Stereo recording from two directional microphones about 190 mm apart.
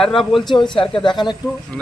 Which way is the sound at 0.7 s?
25° left (ahead or behind).